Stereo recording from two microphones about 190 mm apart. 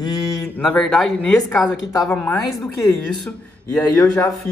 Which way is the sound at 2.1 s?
10° left (ahead or behind).